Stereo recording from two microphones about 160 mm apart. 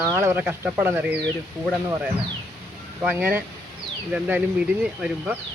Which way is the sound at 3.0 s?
10° right (ahead or behind).